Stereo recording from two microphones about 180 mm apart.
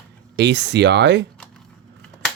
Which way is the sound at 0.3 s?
75° right (ahead or behind).